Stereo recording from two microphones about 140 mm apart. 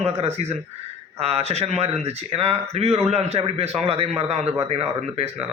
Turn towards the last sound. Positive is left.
turn(degrees=-50)  # may be behind; listen again after turning